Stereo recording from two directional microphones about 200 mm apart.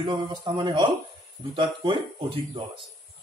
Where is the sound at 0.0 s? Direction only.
20° right (ahead or behind).